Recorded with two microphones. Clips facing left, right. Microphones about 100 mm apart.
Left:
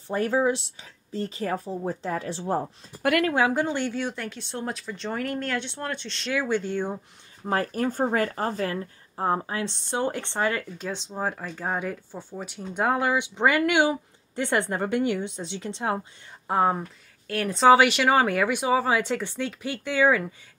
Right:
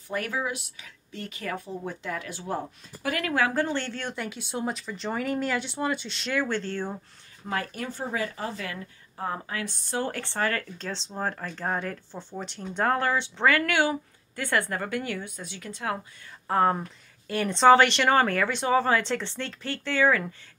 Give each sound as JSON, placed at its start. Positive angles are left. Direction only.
{"t": 0.1, "sound": "speech", "side_deg": 30}
{"t": 3.0, "sound": "speech", "side_deg": 55}
{"t": 3.3, "sound": "speech", "side_deg": 15}
{"t": 4.1, "sound": "speech", "side_deg": -5}
{"t": 7.4, "sound": "speech", "side_deg": 35}
{"t": 16.4, "sound": "speech", "side_deg": 10}